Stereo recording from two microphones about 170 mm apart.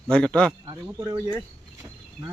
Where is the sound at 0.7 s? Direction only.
25° right (ahead or behind).